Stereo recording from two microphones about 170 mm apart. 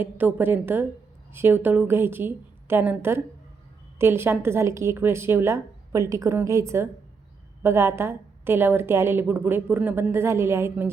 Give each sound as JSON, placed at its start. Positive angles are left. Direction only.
{"t": 0.0, "sound": "a woman's voice", "side_deg": -10}